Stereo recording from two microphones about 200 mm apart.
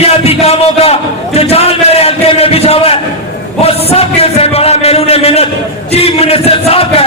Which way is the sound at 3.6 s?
30° left (ahead or behind).